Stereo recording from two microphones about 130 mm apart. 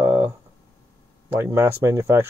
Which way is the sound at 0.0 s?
15° right (ahead or behind).